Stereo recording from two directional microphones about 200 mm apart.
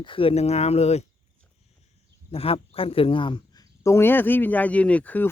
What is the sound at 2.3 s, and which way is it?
Speech, 30° left (ahead or behind).